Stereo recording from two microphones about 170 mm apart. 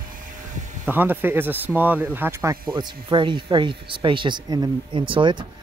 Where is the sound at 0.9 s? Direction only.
10° right (ahead or behind).